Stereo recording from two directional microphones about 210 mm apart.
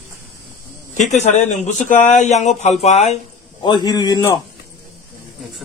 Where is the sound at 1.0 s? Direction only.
35° left (ahead or behind).